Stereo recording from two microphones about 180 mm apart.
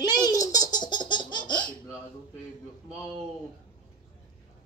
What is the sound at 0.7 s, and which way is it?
Laughter, 25° left (ahead or behind).